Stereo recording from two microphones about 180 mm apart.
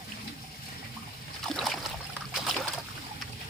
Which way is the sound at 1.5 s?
Centre (ahead or behind).